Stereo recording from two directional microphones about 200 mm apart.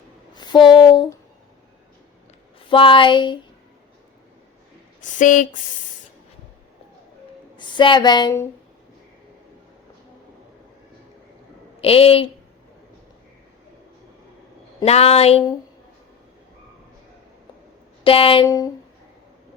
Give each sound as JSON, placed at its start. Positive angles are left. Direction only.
{"t": 0.3, "sound": "a sound", "side_deg": 20}
{"t": 2.6, "sound": "speech", "side_deg": 25}
{"t": 4.9, "sound": "speech", "side_deg": 40}
{"t": 7.5, "sound": "a woman's voice", "side_deg": 25}
{"t": 11.8, "sound": "speech", "side_deg": 30}
{"t": 14.8, "sound": "a woman's voice", "side_deg": 30}
{"t": 18.0, "sound": "speech", "side_deg": 25}
{"t": 18.4, "sound": "a sound", "side_deg": 15}